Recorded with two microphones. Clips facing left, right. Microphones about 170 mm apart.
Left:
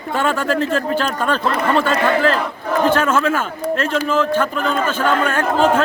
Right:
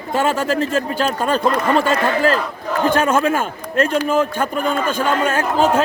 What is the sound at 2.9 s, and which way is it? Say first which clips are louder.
A man's voice: even; 15° right (ahead or behind).